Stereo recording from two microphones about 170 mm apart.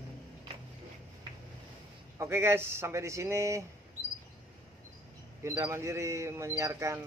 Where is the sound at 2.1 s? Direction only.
15° right (ahead or behind).